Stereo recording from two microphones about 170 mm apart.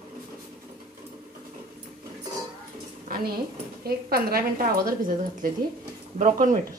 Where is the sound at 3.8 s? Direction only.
60° right (ahead or behind).